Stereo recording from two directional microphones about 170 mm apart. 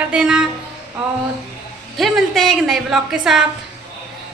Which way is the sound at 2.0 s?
Centre (ahead or behind).